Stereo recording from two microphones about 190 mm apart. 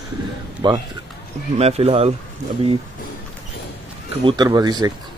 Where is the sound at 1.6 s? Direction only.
30° right (ahead or behind).